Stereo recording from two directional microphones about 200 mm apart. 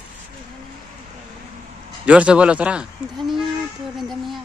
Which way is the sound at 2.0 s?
5° right (ahead or behind).